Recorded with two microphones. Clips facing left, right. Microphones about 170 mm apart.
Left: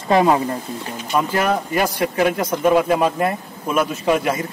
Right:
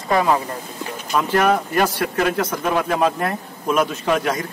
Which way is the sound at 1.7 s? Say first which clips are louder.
Left 1 dB; 10° left (ahead or behind).